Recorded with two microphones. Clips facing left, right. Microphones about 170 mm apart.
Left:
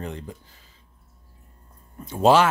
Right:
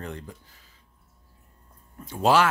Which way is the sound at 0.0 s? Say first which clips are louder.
Left 3 dB; 20° left (ahead or behind).